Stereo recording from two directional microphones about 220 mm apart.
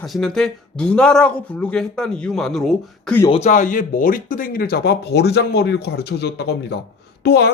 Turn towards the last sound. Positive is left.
turn(degrees=45)  # may be behind; listen again after turning